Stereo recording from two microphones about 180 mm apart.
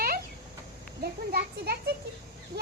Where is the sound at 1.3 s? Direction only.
60° right (ahead or behind).